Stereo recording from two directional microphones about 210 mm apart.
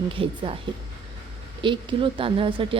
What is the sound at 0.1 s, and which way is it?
Speech, 25° right (ahead or behind).